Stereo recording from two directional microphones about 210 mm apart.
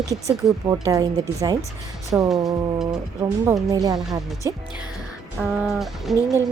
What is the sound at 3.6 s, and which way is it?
Speech, 15° right (ahead or behind).